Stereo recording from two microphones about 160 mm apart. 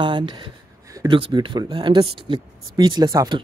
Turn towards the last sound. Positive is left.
turn(degrees=-25)  # may be behind; listen again after turning